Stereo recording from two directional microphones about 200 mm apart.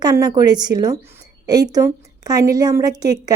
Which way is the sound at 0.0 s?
20° right (ahead or behind).